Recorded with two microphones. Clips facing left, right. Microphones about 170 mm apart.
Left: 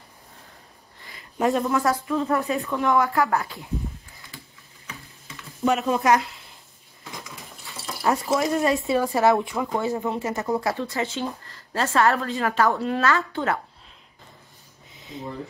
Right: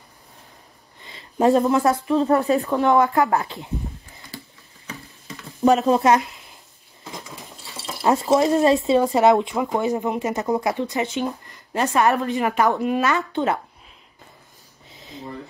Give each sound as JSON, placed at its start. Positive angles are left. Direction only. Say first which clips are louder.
{"t": 1.0, "sound": "a sound", "louder": "right 5 dB", "side_deg": -30}
{"t": 1.7, "sound": "speech", "louder": "right 4 dB", "side_deg": -20}
{"t": 2.1, "sound": "speech", "louder": "right 6 dB", "side_deg": -35}
{"t": 3.0, "sound": "speech", "louder": "right 3 dB", "side_deg": -20}
{"t": 4.8, "sound": "stir", "louder": "right 5 dB", "side_deg": -35}
{"t": 7.8, "sound": "a sound", "louder": "right 4 dB", "side_deg": -20}
{"t": 8.3, "sound": "speech", "louder": "right 8 dB", "side_deg": -35}
{"t": 8.6, "sound": "speech", "louder": "right 5 dB", "side_deg": -20}